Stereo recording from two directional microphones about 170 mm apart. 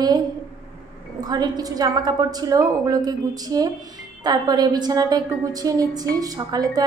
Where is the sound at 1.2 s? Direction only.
25° right (ahead or behind).